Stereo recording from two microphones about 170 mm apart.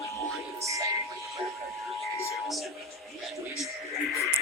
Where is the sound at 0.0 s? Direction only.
15° left (ahead or behind).